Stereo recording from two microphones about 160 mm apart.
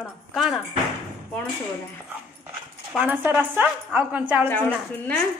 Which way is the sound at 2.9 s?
10° right (ahead or behind).